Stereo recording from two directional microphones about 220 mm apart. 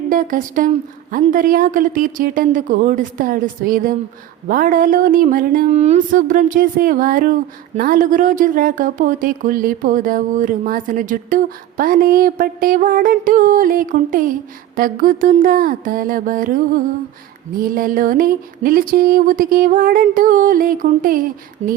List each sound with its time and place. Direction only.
0.1 s speech: 40° right (ahead or behind)